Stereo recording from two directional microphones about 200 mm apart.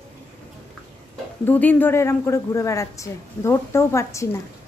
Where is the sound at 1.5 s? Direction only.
10° left (ahead or behind).